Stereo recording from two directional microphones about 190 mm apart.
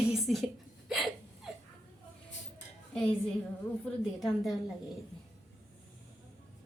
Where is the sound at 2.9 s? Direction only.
5° left (ahead or behind).